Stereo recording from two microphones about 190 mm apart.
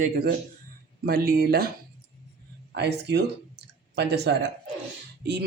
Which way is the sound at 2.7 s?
60° right (ahead or behind).